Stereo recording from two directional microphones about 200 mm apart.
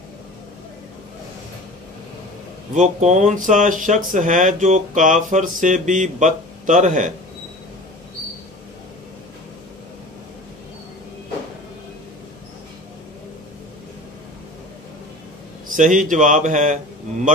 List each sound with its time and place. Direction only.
2.7 s speech: 35° right (ahead or behind)
15.7 s speech: 40° right (ahead or behind)